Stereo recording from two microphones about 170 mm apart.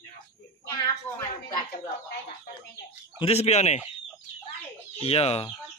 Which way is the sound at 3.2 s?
40° left (ahead or behind).